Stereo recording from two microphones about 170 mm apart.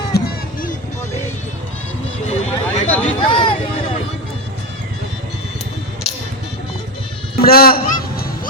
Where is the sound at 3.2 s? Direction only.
30° left (ahead or behind).